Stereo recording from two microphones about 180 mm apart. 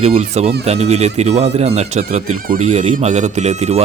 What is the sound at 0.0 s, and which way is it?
Speech, 35° right (ahead or behind).